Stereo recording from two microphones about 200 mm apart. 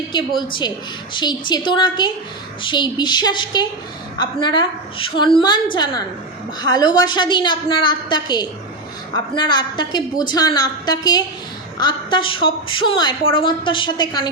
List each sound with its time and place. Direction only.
0.1 s a woman's voice: 25° left (ahead or behind)